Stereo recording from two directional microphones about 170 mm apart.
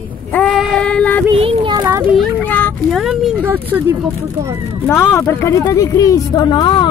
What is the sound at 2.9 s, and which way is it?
Speech, centre (ahead or behind).